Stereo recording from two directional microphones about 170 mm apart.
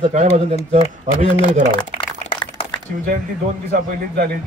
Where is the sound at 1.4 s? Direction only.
30° left (ahead or behind).